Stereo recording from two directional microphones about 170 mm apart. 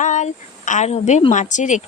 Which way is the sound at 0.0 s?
45° left (ahead or behind).